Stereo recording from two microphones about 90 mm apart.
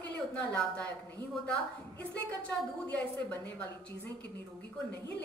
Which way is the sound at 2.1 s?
15° left (ahead or behind).